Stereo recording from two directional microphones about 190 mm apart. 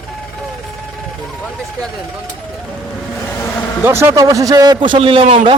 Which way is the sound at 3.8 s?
15° right (ahead or behind).